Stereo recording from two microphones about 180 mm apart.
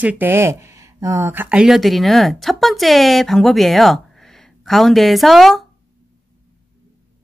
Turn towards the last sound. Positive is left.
turn(degrees=0)  # may be behind; listen again after turning